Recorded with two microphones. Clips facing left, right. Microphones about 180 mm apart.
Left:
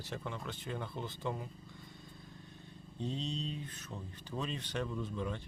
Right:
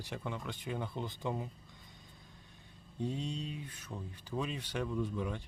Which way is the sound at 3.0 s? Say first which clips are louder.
Right 1 dB; 10° right (ahead or behind).